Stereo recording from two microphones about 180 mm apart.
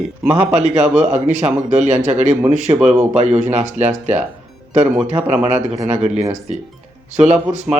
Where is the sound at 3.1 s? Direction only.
40° right (ahead or behind).